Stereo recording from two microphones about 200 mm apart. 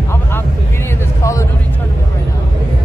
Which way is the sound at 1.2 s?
15° left (ahead or behind).